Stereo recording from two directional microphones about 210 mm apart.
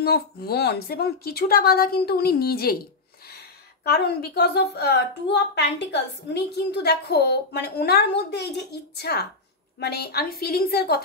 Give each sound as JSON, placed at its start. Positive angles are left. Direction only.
{"t": 0.0, "sound": "a woman's voice", "side_deg": 50}